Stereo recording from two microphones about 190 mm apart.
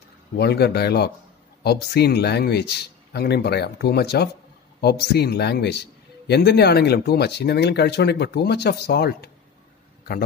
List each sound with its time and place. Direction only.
0.4 s a man's voice: 60° left (ahead or behind)